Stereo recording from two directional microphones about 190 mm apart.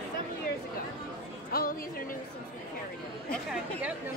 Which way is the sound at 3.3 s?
5° right (ahead or behind).